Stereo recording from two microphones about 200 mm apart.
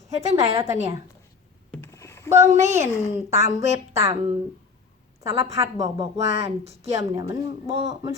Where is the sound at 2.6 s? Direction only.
15° right (ahead or behind).